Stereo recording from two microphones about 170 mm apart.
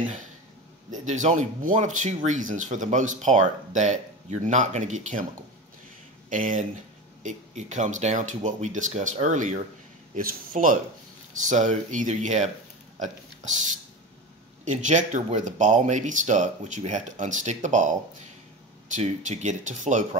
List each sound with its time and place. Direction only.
1.0 s speech: 45° right (ahead or behind)
6.3 s speech: 50° right (ahead or behind)
14.6 s speech: 45° right (ahead or behind)